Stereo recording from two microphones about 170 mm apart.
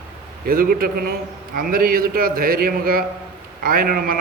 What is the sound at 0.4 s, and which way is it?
A man's voice, 60° right (ahead or behind).